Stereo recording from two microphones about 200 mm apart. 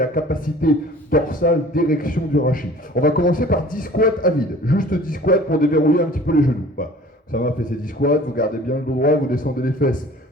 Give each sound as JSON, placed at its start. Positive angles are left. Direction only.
{"t": 0.0, "sound": "a man's voice", "side_deg": 45}